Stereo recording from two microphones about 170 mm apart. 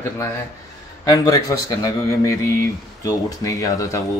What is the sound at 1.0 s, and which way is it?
Speech, 20° left (ahead or behind).